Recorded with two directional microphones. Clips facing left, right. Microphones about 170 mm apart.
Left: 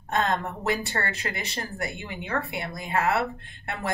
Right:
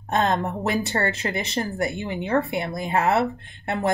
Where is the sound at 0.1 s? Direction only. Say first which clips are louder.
Right 4 dB; 25° right (ahead or behind).